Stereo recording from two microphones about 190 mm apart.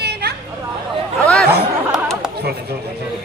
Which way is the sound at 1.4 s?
60° right (ahead or behind).